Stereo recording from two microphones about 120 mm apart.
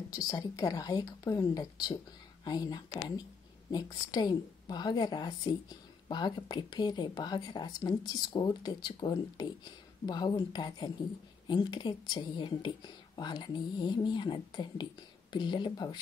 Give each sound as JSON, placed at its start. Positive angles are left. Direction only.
{"t": 0.1, "sound": "a woman's voice", "side_deg": 30}